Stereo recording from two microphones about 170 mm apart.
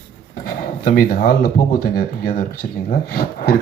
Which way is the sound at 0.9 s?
60° left (ahead or behind).